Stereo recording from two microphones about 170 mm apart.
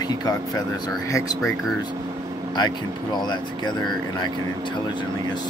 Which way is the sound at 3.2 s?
25° left (ahead or behind).